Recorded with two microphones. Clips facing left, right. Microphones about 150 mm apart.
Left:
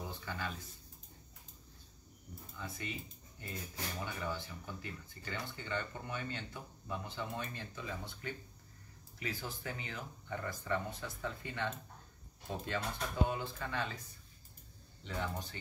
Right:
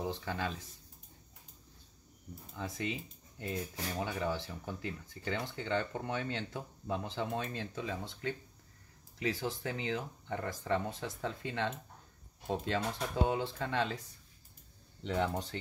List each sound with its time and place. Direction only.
0.0 s speech: 75° right (ahead or behind)
2.5 s speech: 90° right; by 13.9 s 70° right (ahead or behind)
15.0 s speech: 70° right (ahead or behind)